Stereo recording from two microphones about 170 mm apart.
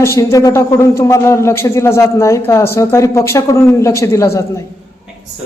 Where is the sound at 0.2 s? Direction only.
20° left (ahead or behind).